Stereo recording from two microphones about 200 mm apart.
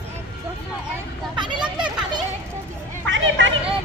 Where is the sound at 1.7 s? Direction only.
20° right (ahead or behind).